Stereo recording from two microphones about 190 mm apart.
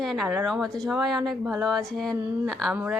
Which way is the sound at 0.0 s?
Centre (ahead or behind).